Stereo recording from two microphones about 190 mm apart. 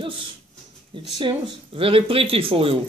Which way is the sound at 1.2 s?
30° right (ahead or behind).